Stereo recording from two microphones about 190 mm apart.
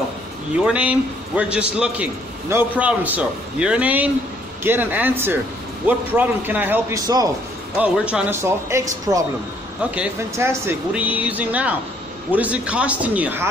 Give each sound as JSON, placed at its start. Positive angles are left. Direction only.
{"t": 0.7, "sound": "speech", "side_deg": -5}